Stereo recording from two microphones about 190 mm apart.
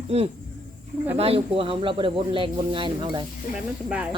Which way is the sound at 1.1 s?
30° right (ahead or behind).